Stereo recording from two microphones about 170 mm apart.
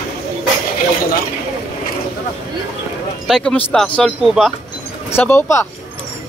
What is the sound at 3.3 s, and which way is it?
Speech, 5° left (ahead or behind).